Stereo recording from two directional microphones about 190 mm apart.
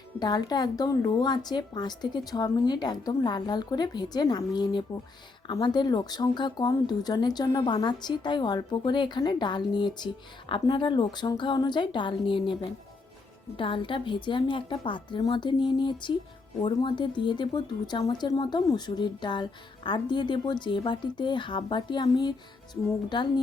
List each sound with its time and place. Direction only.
0.2 s speech: 20° left (ahead or behind)
13.6 s speech: 25° left (ahead or behind)